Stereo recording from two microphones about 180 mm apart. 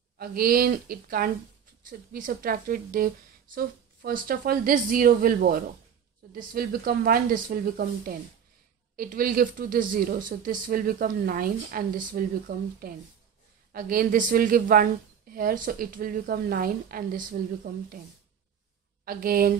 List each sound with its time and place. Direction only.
0.2 s a woman's voice: 55° right (ahead or behind)
19.0 s speech: 55° right (ahead or behind)